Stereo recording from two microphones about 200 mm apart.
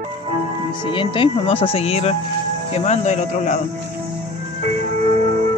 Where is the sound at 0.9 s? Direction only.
25° left (ahead or behind).